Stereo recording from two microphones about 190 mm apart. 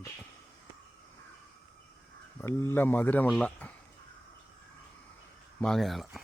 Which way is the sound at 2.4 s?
10° left (ahead or behind).